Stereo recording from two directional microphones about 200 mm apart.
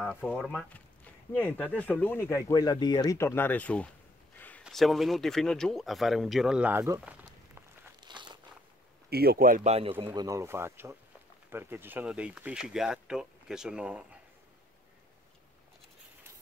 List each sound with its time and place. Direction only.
0.0 s speech: 5° right (ahead or behind)
8.0 s a sound: 20° right (ahead or behind)
9.1 s a man's voice: 50° right (ahead or behind); by 9.9 s 30° right (ahead or behind)
10.0 s speech: 20° right (ahead or behind)